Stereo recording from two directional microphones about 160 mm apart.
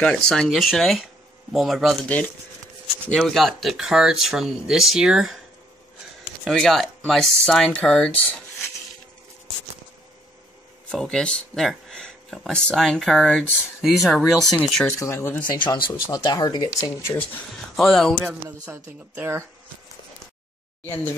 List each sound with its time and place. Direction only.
0.0 s speech: 5° left (ahead or behind)
6.4 s speech: centre (ahead or behind)
10.9 s speech: 5° left (ahead or behind)
14.9 s speech: 15° left (ahead or behind)
15.5 s speech: 25° left (ahead or behind)
17.7 s speech: centre (ahead or behind)
19.1 s speech: 15° right (ahead or behind)